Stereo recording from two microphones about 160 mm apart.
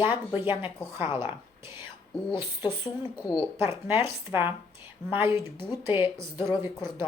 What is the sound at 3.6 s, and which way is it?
Speech, 15° right (ahead or behind).